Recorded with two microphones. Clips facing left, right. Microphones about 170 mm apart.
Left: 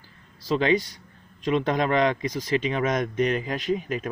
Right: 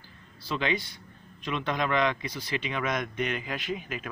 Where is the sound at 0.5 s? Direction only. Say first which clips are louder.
Left 8 dB; 40° left (ahead or behind).